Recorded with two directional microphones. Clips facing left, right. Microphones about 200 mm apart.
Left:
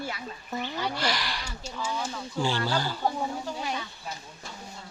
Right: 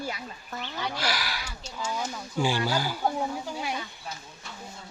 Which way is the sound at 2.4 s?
10° right (ahead or behind).